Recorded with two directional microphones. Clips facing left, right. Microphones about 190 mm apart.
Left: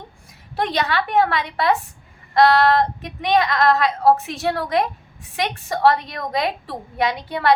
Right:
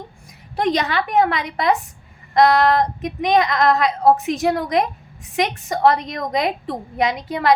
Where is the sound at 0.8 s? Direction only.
15° right (ahead or behind).